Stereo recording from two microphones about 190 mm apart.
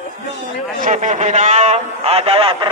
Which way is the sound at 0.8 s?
40° right (ahead or behind).